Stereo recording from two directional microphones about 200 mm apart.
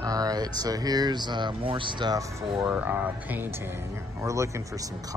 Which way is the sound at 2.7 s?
5° right (ahead or behind).